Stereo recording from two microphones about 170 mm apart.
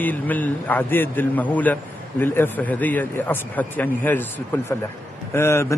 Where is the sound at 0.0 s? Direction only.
10° left (ahead or behind).